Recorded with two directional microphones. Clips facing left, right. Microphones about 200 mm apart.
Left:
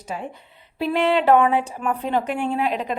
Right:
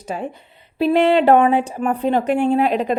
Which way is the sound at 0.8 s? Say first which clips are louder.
Right 5 dB; 30° right (ahead or behind).